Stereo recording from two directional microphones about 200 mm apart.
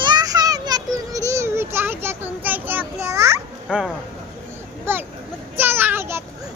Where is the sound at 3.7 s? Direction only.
Centre (ahead or behind).